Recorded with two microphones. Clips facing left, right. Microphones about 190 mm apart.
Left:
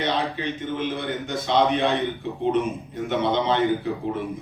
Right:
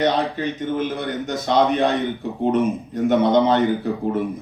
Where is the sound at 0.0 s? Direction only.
45° right (ahead or behind).